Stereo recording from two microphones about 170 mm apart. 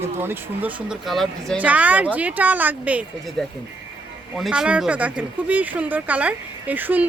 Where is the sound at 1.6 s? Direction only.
10° right (ahead or behind).